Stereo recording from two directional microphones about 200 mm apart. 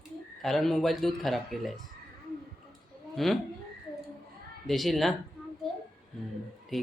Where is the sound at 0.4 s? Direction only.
Centre (ahead or behind).